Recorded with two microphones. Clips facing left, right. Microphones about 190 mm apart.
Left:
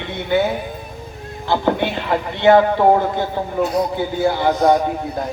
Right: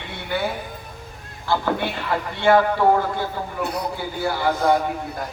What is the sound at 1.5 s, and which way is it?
A man's voice, 20° left (ahead or behind).